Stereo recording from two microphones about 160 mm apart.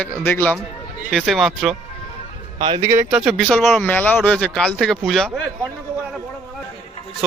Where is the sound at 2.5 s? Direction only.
35° right (ahead or behind).